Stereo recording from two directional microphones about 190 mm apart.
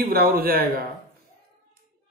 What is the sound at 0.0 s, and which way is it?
Speech, 50° right (ahead or behind).